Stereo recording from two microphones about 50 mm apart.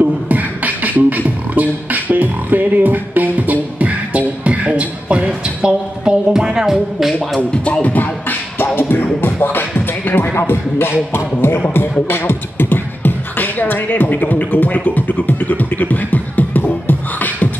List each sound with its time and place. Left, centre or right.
0.0 s beatboxing: right; by 7.2 s centre
7.3 s beatboxing: centre; by 14.0 s left
14.0 s speech: left